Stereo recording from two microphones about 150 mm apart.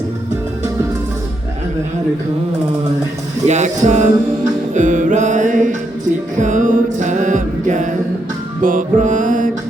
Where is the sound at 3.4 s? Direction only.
50° right (ahead or behind).